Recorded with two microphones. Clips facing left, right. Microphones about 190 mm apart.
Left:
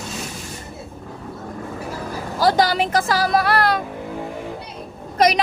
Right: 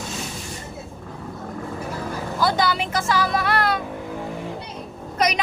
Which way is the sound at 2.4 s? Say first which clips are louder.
Left 5 dB; 40° left (ahead or behind).